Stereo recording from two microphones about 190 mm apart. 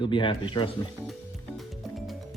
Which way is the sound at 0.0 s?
25° left (ahead or behind).